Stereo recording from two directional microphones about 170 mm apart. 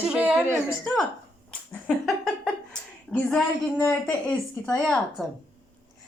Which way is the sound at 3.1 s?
5° left (ahead or behind).